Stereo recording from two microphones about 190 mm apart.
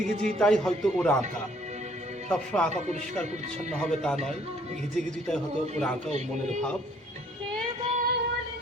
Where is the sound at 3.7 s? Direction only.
5° left (ahead or behind).